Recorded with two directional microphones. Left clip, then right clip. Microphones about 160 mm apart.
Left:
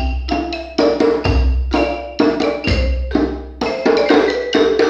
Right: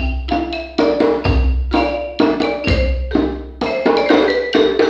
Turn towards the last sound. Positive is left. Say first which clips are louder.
# even
turn(degrees=5)  # may be behind; listen again after turning